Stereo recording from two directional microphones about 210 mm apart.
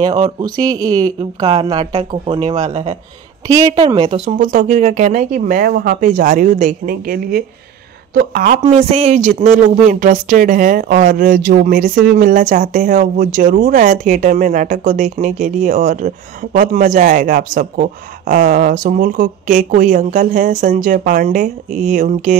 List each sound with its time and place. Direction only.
0.6 s a woman's voice: 15° right (ahead or behind)
4.3 s a man's voice: 40° right (ahead or behind)